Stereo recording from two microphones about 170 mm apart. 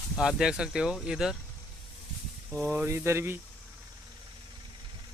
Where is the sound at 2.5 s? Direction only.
15° right (ahead or behind).